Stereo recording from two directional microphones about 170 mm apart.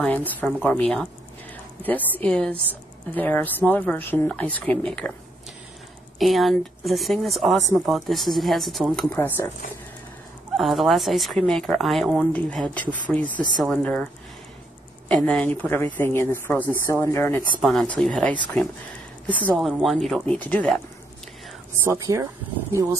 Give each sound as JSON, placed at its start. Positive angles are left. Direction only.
{"t": 0.0, "sound": "speech", "side_deg": 10}
{"t": 6.1, "sound": "speech", "side_deg": 0}
{"t": 10.5, "sound": "speech", "side_deg": 0}
{"t": 15.0, "sound": "speech", "side_deg": 5}
{"t": 17.6, "sound": "speech", "side_deg": 5}
{"t": 21.7, "sound": "speech", "side_deg": -15}